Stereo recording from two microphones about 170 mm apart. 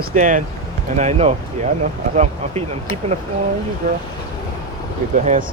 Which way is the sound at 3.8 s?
50° right (ahead or behind).